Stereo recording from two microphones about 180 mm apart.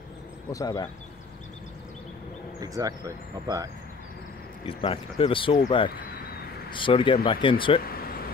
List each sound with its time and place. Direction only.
0.5 s speech: 20° left (ahead or behind)
2.6 s speech: 20° right (ahead or behind)
4.6 s speech: 30° left (ahead or behind)
6.7 s speech: 30° left (ahead or behind)